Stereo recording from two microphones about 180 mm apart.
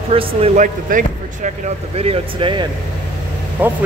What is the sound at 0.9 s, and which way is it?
Speech, 50° right (ahead or behind).